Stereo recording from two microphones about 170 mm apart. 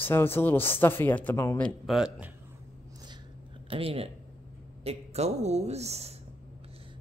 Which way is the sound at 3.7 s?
35° right (ahead or behind).